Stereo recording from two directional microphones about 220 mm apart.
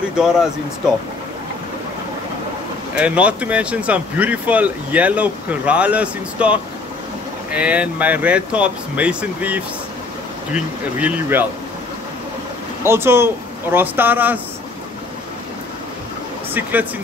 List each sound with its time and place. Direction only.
0.1 s speech: 5° right (ahead or behind)
3.0 s speech: 5° right (ahead or behind)
12.8 s speech: 10° right (ahead or behind)